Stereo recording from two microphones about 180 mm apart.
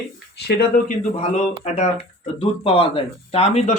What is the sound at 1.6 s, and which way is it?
Speech, 40° left (ahead or behind).